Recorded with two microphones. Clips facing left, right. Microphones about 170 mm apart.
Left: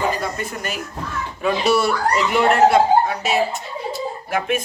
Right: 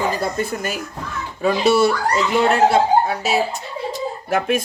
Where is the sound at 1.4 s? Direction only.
25° right (ahead or behind).